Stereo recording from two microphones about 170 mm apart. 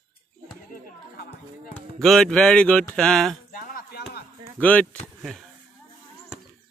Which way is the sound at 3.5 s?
55° left (ahead or behind).